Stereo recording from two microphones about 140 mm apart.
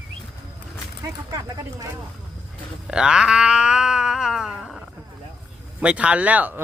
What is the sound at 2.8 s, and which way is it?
Cat, 5° right (ahead or behind).